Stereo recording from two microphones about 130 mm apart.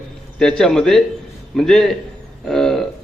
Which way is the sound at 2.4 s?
Centre (ahead or behind).